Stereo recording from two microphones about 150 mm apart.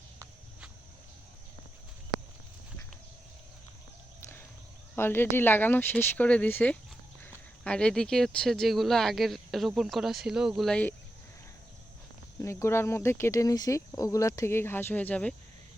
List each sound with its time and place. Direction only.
4.9 s speech: 15° left (ahead or behind)
12.4 s speech: 20° left (ahead or behind)